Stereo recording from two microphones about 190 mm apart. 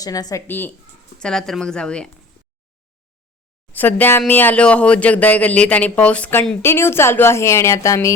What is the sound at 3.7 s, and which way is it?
A woman's voice, 10° left (ahead or behind).